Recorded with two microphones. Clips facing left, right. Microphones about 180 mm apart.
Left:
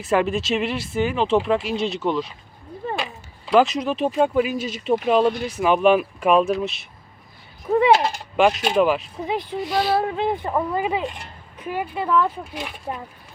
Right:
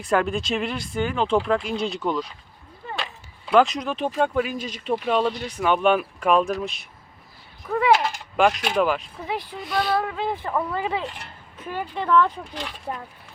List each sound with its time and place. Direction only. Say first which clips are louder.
0.0 s speech: left 2 dB; 5° left (ahead or behind)
2.8 s chop: left 7 dB; 45° left (ahead or behind)
3.5 s speech: left 1 dB; centre (ahead or behind)
7.9 s a sound: left 3 dB; 35° left (ahead or behind)
8.8 s speech: left 3 dB; centre (ahead or behind)
9.2 s speech: left 6 dB; 20° left (ahead or behind)
9.6 s speech: left 3 dB; centre (ahead or behind)
9.9 s speech: left 3 dB; 25° left (ahead or behind); by 13.0 s 5° left (ahead or behind)